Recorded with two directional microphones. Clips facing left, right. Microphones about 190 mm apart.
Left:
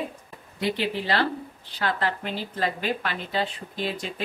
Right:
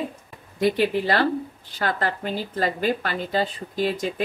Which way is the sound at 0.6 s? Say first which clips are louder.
Right 6 dB; 50° right (ahead or behind).